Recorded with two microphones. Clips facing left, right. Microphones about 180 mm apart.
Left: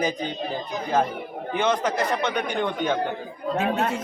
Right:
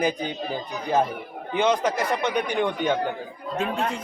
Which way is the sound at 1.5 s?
10° right (ahead or behind).